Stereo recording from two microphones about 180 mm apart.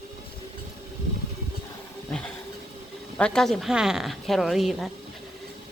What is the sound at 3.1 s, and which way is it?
Speech, 5° left (ahead or behind).